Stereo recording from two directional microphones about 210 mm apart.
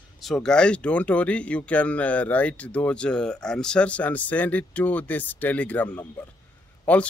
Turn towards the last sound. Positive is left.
turn(degrees=5)  # may be behind; listen again after turning